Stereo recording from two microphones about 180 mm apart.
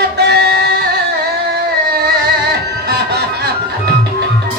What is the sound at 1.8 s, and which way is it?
Music, 65° right (ahead or behind).